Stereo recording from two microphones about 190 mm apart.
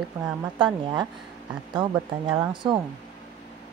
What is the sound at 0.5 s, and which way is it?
Speech, 25° right (ahead or behind).